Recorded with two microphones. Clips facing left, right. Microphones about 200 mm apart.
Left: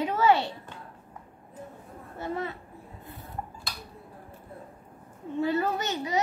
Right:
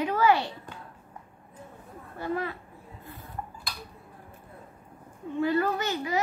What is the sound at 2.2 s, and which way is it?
Speech, 25° left (ahead or behind).